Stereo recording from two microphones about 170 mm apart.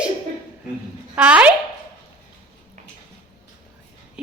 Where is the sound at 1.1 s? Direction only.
5° right (ahead or behind).